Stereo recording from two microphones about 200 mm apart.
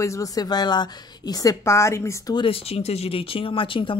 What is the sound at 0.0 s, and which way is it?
Speech, 15° left (ahead or behind).